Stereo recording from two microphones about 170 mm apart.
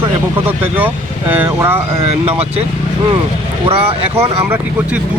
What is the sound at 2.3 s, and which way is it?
Speech, 35° right (ahead or behind).